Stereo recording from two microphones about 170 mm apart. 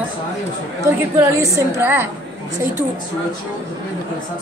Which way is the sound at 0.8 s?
15° right (ahead or behind).